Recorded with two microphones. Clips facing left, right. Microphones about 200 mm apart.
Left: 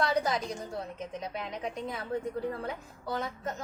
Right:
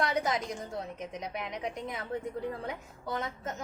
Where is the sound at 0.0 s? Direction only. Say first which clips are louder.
Left 1 dB; 20° right (ahead or behind).